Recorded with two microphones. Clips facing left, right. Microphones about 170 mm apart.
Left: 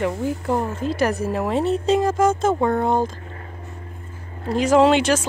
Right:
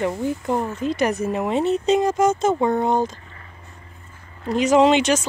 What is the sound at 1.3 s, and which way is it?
Speech, centre (ahead or behind).